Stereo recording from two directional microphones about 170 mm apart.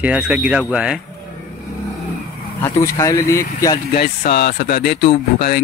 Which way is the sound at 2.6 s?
15° left (ahead or behind).